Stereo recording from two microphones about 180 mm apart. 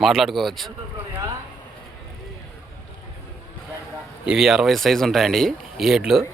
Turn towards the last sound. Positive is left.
turn(degrees=0)  # may be behind; listen again after turning